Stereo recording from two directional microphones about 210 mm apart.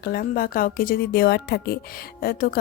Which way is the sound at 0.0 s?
45° left (ahead or behind).